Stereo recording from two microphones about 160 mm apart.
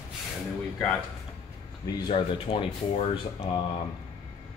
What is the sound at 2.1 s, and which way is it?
Speech, 35° left (ahead or behind).